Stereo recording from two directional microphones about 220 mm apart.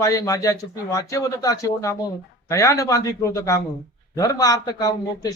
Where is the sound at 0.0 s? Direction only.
15° left (ahead or behind).